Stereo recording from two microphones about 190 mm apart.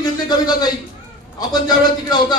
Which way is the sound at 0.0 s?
20° left (ahead or behind).